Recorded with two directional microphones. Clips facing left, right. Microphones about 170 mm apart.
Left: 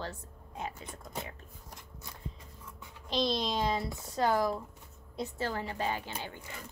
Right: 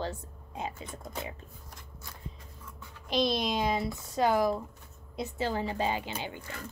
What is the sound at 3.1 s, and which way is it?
A woman's voice, 15° right (ahead or behind).